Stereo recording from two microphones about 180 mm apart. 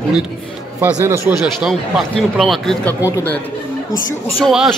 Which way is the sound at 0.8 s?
10° right (ahead or behind).